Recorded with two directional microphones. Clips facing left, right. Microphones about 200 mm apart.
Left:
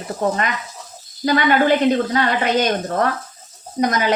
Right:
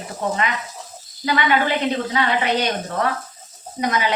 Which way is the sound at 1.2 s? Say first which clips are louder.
Left 4 dB; 45° left (ahead or behind).